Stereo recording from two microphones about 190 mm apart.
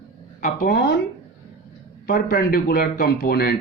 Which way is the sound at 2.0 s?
50° left (ahead or behind).